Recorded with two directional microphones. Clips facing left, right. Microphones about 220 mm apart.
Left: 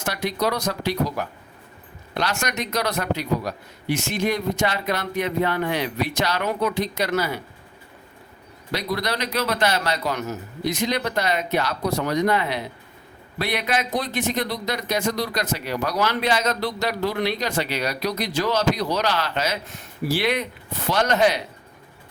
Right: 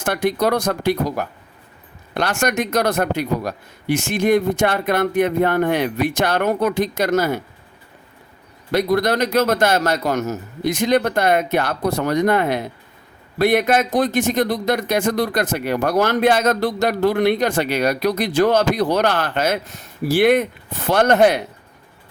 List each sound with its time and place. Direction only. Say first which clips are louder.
0.0 s speech: right 6 dB; 50° right (ahead or behind)
8.7 s speech: right 9 dB; 50° right (ahead or behind)